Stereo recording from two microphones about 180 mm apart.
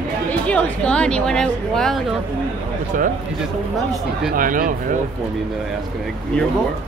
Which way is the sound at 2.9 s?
50° right (ahead or behind).